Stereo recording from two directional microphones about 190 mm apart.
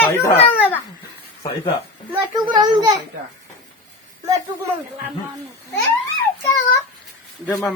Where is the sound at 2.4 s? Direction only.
25° right (ahead or behind).